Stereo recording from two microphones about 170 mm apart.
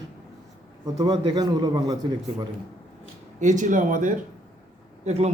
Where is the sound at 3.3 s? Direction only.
45° right (ahead or behind).